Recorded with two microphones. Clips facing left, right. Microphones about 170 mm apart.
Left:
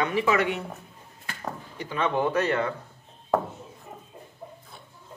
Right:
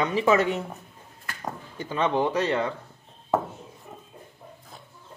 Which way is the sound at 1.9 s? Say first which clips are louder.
Right 1 dB; 25° right (ahead or behind).